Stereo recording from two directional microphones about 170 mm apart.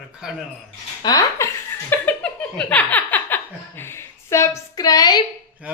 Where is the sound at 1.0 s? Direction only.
20° left (ahead or behind).